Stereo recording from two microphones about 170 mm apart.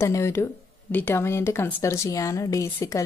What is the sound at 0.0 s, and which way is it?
Speech, 15° left (ahead or behind).